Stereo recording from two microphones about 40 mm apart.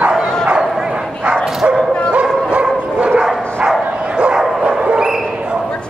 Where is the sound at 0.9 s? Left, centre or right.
Right.